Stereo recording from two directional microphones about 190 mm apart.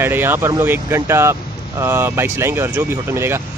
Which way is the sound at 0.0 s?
10° right (ahead or behind).